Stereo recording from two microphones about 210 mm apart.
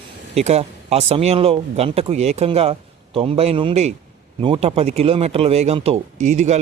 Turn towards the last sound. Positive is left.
turn(degrees=-35)  # may be behind; listen again after turning